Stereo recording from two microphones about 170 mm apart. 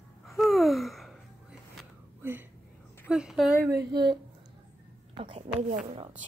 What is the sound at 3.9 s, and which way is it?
A woman's voice, 25° right (ahead or behind).